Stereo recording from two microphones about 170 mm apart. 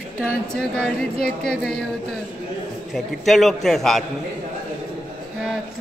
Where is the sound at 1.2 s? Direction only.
65° left (ahead or behind).